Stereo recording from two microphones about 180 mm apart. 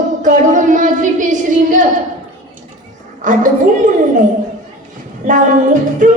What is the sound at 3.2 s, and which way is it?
Child singing, 45° right (ahead or behind).